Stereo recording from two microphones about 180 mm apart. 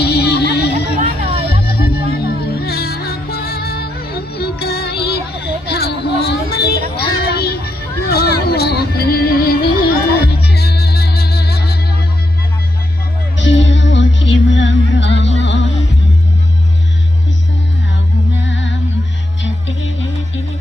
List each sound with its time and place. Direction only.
0.0 s music: 65° left (ahead or behind)
5.6 s a sound: 60° left (ahead or behind)
13.4 s music: 90° left
18.4 s music: 90° left